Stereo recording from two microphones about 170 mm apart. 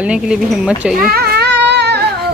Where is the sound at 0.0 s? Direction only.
5° right (ahead or behind).